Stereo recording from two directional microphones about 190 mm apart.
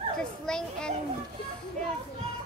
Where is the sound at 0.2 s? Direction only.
5° left (ahead or behind).